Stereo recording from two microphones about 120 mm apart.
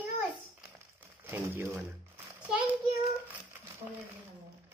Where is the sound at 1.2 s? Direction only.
20° right (ahead or behind).